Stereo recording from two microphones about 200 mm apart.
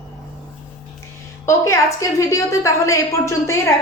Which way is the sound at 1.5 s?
15° left (ahead or behind).